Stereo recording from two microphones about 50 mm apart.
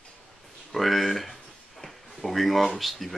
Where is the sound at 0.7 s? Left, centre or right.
Centre.